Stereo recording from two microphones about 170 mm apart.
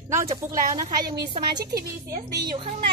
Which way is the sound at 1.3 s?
25° right (ahead or behind).